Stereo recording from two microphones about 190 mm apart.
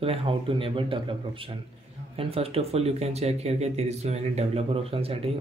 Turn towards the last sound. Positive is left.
turn(degrees=-30)  # may be behind; listen again after turning